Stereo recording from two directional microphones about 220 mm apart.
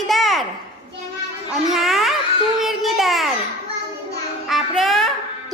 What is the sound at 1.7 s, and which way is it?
Speech, centre (ahead or behind).